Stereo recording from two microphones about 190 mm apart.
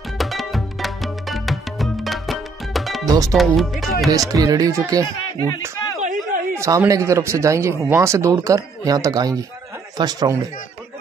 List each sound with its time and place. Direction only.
0.2 s music: centre (ahead or behind)
3.1 s speech: 20° right (ahead or behind)
3.3 s speech: centre (ahead or behind)
4.1 s speech: 20° right (ahead or behind)
5.9 s chop: 40° right (ahead or behind)
6.5 s speech: 15° right (ahead or behind)